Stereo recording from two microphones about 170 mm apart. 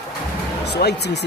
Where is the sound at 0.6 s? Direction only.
80° left.